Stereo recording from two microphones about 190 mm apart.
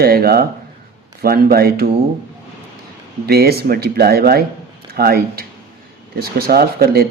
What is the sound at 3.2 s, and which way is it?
Speech, 55° right (ahead or behind).